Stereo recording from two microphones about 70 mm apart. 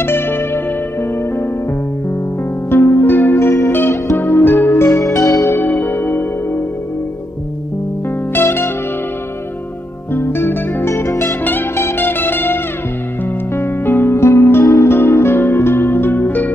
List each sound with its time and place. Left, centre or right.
0.0 s music: left
2.7 s music: left
3.3 s music: left
4.2 s music: left
5.1 s music: left
5.5 s music: left
8.4 s music: left
10.1 s music: left
13.6 s music: left